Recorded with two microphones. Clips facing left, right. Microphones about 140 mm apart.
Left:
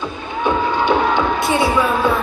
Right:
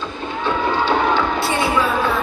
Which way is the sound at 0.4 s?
15° left (ahead or behind).